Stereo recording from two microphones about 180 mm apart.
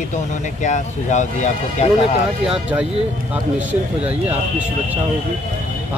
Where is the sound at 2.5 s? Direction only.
5° right (ahead or behind).